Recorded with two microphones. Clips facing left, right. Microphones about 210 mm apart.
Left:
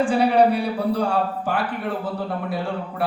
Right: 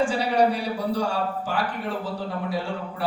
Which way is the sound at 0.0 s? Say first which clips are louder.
Left 4 dB; 55° left (ahead or behind).